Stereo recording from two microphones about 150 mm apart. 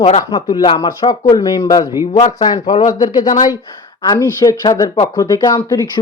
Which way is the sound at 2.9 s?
25° left (ahead or behind).